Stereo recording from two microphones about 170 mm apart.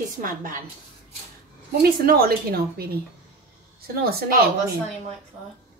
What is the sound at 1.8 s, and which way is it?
A woman's voice, 60° right (ahead or behind).